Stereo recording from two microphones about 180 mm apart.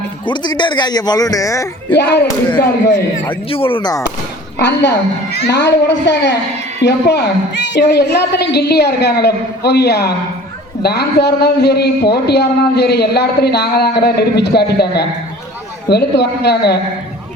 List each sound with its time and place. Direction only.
0.3 s a man's voice: 25° left (ahead or behind)
2.0 s a woman's voice: 65° left (ahead or behind)
3.2 s a man's voice: 30° left (ahead or behind)
4.5 s a woman's voice: 75° left (ahead or behind)